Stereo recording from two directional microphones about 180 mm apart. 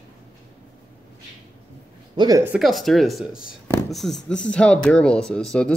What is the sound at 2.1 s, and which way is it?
Speech, 20° right (ahead or behind).